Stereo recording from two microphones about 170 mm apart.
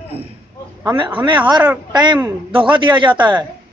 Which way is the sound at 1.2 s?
25° right (ahead or behind).